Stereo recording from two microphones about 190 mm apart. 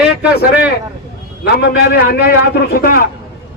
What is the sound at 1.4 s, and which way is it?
Speech, 60° left (ahead or behind).